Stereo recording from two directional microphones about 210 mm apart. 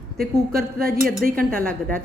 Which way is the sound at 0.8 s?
45° right (ahead or behind).